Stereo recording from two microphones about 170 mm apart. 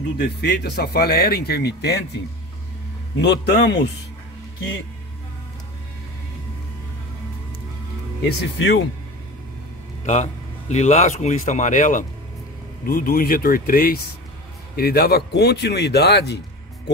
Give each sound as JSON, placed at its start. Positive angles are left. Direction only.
{"t": 0.2, "sound": "speech", "side_deg": 70}
{"t": 3.2, "sound": "a man's voice", "side_deg": 90}
{"t": 8.5, "sound": "speech", "side_deg": 90}
{"t": 10.0, "sound": "a man's voice", "side_deg": 40}
{"t": 12.8, "sound": "speech", "side_deg": 60}